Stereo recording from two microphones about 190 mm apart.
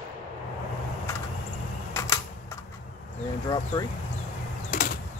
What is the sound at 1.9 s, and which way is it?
Typewriter, 15° left (ahead or behind).